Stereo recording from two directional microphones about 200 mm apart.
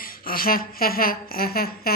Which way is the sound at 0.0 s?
45° left (ahead or behind).